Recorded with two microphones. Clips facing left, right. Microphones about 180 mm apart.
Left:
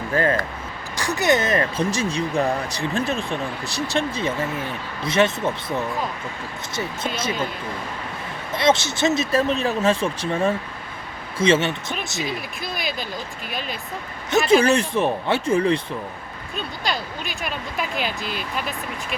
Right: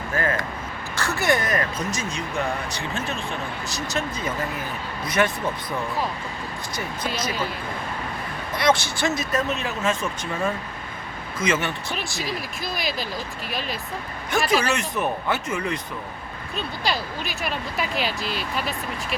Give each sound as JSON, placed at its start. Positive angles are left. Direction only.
{"t": 0.1, "sound": "speech", "side_deg": 30}
{"t": 0.9, "sound": "speech", "side_deg": 15}
{"t": 8.5, "sound": "speech", "side_deg": 25}
{"t": 12.7, "sound": "speech", "side_deg": 0}
{"t": 14.3, "sound": "speech", "side_deg": 25}
{"t": 16.8, "sound": "speech", "side_deg": 0}
{"t": 18.0, "sound": "speech", "side_deg": 50}